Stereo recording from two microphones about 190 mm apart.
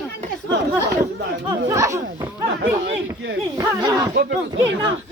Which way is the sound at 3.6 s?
20° right (ahead or behind).